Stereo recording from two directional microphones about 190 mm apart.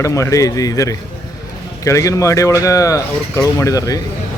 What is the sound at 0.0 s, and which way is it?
A man's voice, 15° left (ahead or behind).